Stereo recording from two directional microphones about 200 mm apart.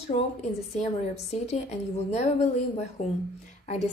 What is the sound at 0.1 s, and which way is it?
Speech, 35° left (ahead or behind).